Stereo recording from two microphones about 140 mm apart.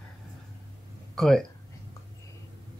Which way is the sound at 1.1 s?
5° left (ahead or behind).